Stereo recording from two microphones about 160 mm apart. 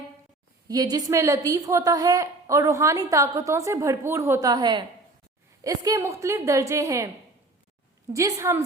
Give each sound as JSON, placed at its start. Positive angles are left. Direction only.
{"t": 0.7, "sound": "a woman's voice", "side_deg": -25}
{"t": 8.1, "sound": "a woman's voice", "side_deg": -20}